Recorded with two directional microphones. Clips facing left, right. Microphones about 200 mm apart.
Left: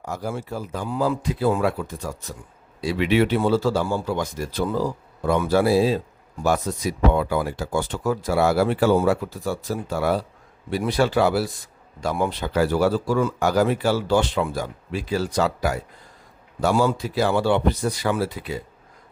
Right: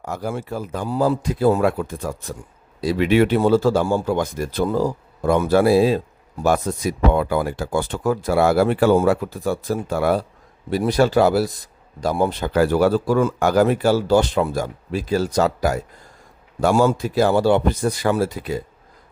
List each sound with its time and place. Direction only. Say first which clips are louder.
0.0 s speech: right 2 dB; 60° right (ahead or behind)
0.9 s speech: right 4 dB; 40° right (ahead or behind)
2.8 s speech: right 3 dB; 40° right (ahead or behind)
10.7 s speech: right 4 dB; 40° right (ahead or behind)